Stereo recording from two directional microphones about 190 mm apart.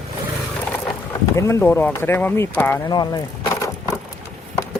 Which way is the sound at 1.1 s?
15° left (ahead or behind).